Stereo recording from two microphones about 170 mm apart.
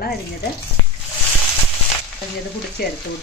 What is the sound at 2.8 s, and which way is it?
Frying, 65° left (ahead or behind).